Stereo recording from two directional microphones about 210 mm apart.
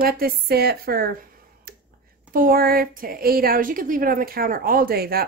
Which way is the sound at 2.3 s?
45° right (ahead or behind).